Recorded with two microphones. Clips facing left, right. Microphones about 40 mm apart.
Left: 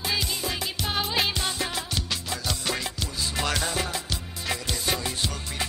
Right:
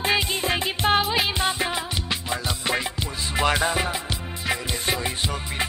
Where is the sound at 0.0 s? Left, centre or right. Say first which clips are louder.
Right 6 dB; right.